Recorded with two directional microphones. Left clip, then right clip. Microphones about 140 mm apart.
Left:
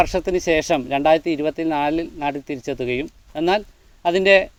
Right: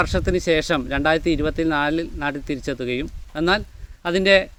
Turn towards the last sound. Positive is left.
turn(degrees=-30)  # may be behind; listen again after turning